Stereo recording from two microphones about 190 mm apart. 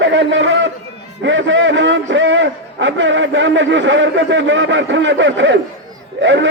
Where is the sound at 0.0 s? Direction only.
75° right (ahead or behind).